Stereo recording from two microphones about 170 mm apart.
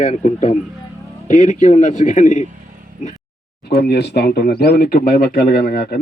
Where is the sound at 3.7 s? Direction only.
75° left (ahead or behind).